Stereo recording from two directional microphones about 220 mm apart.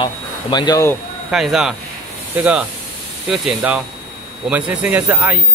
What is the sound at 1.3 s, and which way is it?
Speech, centre (ahead or behind).